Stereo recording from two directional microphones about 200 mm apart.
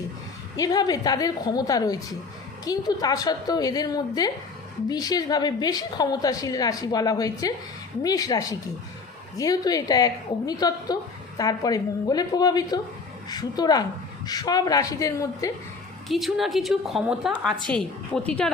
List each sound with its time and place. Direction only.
0.5 s a woman's voice: 20° left (ahead or behind)
16.0 s a woman's voice: centre (ahead or behind)